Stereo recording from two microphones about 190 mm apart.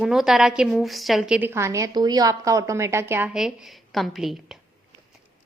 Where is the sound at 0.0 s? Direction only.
Centre (ahead or behind).